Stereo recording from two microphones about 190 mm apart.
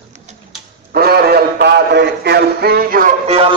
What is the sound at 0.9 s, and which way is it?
A man's voice, 55° right (ahead or behind).